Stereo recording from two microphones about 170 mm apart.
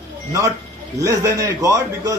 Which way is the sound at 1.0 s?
20° right (ahead or behind).